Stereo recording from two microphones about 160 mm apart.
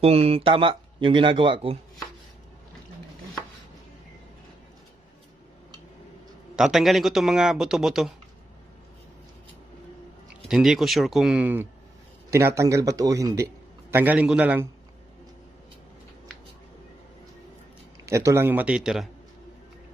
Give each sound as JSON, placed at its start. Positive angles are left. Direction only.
{"t": 0.0, "sound": "speech", "side_deg": -40}
{"t": 6.6, "sound": "speech", "side_deg": 0}
{"t": 10.4, "sound": "speech", "side_deg": 0}
{"t": 18.0, "sound": "speech", "side_deg": -20}